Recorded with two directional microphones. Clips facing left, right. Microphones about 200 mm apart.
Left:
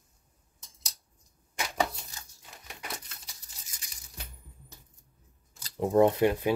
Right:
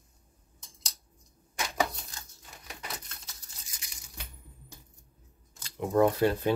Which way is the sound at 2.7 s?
15° left (ahead or behind).